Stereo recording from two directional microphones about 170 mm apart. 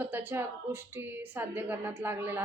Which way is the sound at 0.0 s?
10° right (ahead or behind).